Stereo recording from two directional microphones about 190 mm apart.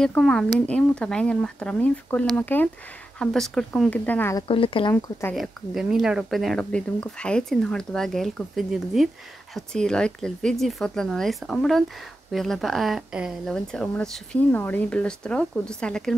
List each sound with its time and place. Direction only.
0.0 s speech: 5° left (ahead or behind)
4.5 s speech: 30° left (ahead or behind)
4.9 s speech: 10° left (ahead or behind)
5.3 s speech: centre (ahead or behind)